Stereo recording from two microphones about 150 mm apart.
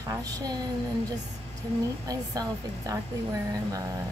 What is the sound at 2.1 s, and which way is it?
Speech, 25° right (ahead or behind).